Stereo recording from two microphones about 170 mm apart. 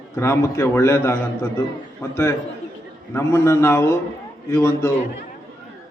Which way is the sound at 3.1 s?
15° left (ahead or behind).